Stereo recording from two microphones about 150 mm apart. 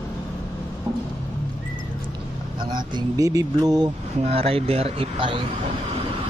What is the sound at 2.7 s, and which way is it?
Speech, 20° right (ahead or behind).